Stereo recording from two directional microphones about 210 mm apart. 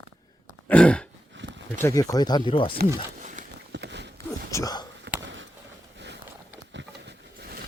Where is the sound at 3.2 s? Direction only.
35° right (ahead or behind).